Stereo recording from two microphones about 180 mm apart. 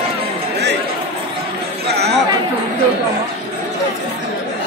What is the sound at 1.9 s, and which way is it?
Chatter, 65° right (ahead or behind).